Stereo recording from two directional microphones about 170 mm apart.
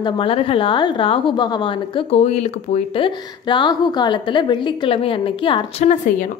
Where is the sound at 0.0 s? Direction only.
30° left (ahead or behind).